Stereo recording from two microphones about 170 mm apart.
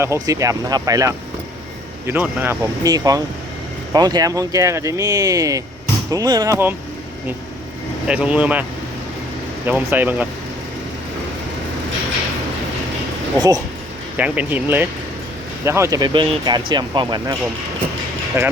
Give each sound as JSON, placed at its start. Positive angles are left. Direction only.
{"t": 0.0, "sound": "speech", "side_deg": -20}
{"t": 8.0, "sound": "speech", "side_deg": -5}
{"t": 9.6, "sound": "speech", "side_deg": -10}
{"t": 14.2, "sound": "speech", "side_deg": -10}
{"t": 18.4, "sound": "speech", "side_deg": -15}